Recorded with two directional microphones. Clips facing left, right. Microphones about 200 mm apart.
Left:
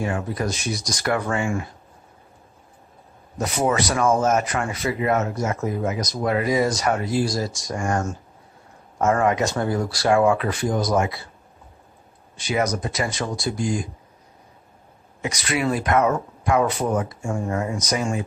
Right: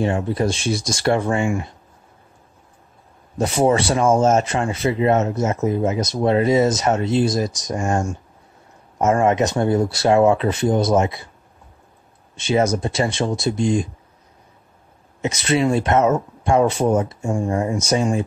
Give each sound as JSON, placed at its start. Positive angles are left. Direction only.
{"t": 0.0, "sound": "speech", "side_deg": -25}
{"t": 3.3, "sound": "speech", "side_deg": -30}
{"t": 12.4, "sound": "speech", "side_deg": -25}
{"t": 15.2, "sound": "speech", "side_deg": -25}